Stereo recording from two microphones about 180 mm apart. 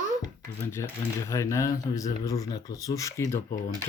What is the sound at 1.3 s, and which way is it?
Speech, 15° left (ahead or behind).